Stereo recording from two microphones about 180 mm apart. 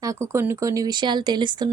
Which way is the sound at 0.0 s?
15° right (ahead or behind).